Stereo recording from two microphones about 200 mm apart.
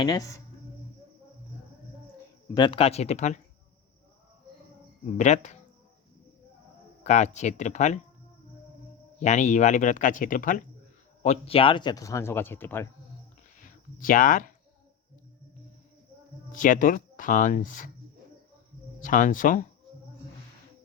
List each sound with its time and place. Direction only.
0.0 s speech: 15° left (ahead or behind)
2.6 s speech: 25° left (ahead or behind)
5.1 s speech: 35° left (ahead or behind)
7.0 s speech: 35° left (ahead or behind)
9.1 s speech: 35° left (ahead or behind)
11.2 s speech: 30° left (ahead or behind); by 12.9 s 10° left (ahead or behind)
13.6 s speech: 40° left (ahead or behind)
16.5 s speech: 40° left (ahead or behind)
18.9 s speech: 40° left (ahead or behind)